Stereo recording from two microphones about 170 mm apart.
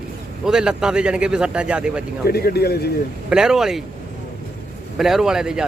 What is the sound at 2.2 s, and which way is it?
Speech, 70° left (ahead or behind).